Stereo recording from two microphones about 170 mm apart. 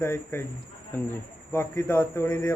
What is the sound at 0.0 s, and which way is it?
A man's voice, 15° left (ahead or behind).